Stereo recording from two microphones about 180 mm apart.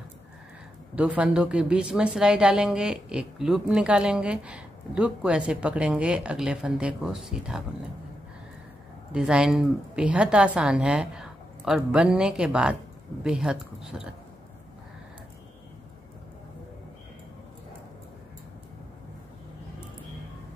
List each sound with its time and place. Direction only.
0.9 s a woman's voice: 5° right (ahead or behind)
9.1 s a woman's voice: 5° right (ahead or behind)